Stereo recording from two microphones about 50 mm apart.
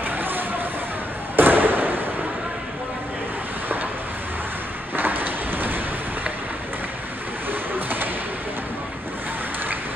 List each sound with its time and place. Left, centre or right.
0.0 s a sound: right
4.9 s rain: right
7.7 s thump: right